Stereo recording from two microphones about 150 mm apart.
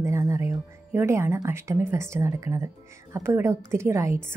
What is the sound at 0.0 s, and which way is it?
A woman's voice, 20° right (ahead or behind).